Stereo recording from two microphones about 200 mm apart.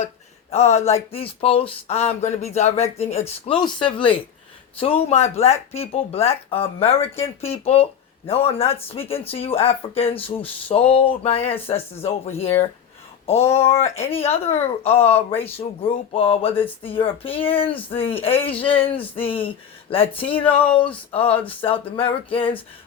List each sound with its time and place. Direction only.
0.5 s speech: 35° left (ahead or behind)